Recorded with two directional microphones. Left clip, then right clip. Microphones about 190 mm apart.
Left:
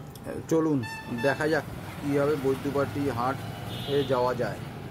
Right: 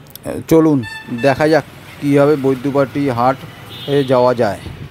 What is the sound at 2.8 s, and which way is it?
Speech, 45° right (ahead or behind).